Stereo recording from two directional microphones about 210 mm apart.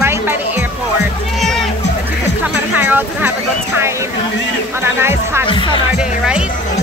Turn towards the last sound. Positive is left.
turn(degrees=25)  # may be behind; listen again after turning